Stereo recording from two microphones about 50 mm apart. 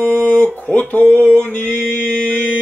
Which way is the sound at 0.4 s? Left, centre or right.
Left.